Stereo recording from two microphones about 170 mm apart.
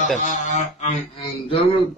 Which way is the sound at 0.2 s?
45° left (ahead or behind).